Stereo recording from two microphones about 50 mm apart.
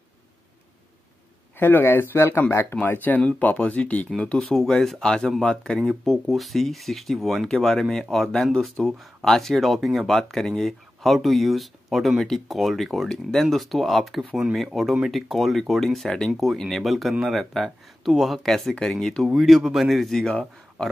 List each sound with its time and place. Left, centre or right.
1.6 s speech: left
2.9 s speech: left
3.2 s speech: left
4.4 s speech: centre
5.9 s speech: centre